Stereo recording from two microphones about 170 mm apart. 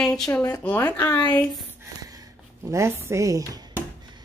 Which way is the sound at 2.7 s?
15° right (ahead or behind).